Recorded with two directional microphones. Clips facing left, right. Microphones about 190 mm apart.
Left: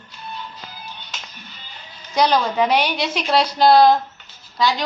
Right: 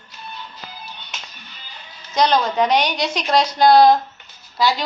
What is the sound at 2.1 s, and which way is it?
A woman's voice, 10° left (ahead or behind).